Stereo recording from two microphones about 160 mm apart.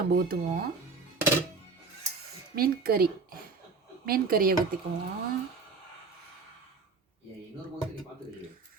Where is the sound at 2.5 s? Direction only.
70° right (ahead or behind).